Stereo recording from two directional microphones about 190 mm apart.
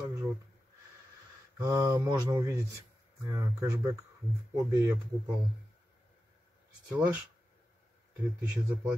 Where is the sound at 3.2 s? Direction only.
15° right (ahead or behind).